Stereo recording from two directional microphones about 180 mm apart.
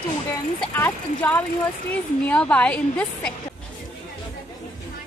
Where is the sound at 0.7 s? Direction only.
10° left (ahead or behind).